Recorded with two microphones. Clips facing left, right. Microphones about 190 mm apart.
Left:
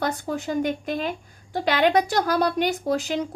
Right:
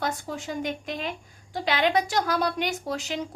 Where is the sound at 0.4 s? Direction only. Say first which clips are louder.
Left 6 dB; 40° left (ahead or behind).